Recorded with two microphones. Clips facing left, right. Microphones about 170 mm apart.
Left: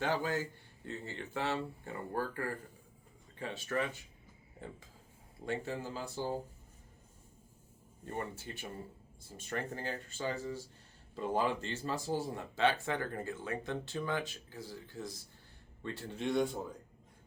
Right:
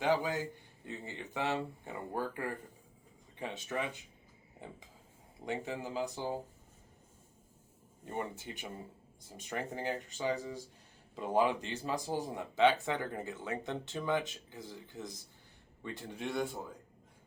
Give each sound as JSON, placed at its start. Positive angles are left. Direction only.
{"t": 0.0, "sound": "speech", "side_deg": -15}
{"t": 5.5, "sound": "speech", "side_deg": -15}
{"t": 8.0, "sound": "speech", "side_deg": -15}